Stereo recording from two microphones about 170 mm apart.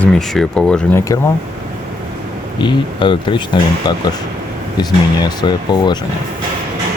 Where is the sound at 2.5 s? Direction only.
25° left (ahead or behind).